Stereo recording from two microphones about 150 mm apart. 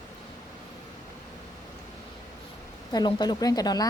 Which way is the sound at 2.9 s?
30° left (ahead or behind).